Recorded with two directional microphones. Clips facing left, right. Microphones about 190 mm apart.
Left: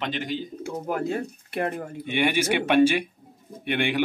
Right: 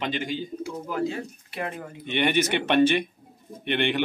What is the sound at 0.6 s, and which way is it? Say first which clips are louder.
Speech: even; 50° left (ahead or behind).